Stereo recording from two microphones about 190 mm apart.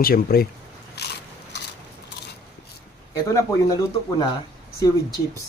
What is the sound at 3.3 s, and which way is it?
Speech, 15° left (ahead or behind).